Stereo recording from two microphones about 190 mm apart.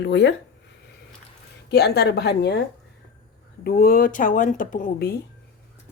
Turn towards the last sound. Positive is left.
turn(degrees=50)  # may be behind; listen again after turning